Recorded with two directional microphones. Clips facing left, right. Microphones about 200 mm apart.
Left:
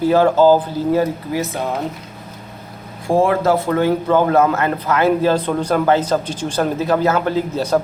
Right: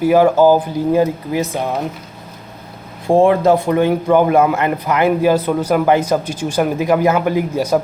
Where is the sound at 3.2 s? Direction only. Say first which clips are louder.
Right 3 dB; 20° right (ahead or behind).